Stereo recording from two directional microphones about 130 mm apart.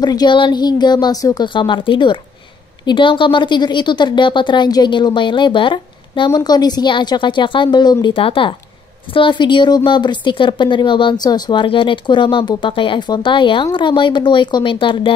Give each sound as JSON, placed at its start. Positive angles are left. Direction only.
{"t": 0.0, "sound": "speech", "side_deg": 35}